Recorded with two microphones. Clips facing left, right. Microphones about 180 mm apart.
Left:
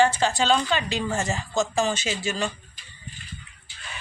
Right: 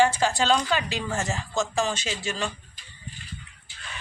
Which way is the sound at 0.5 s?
5° right (ahead or behind).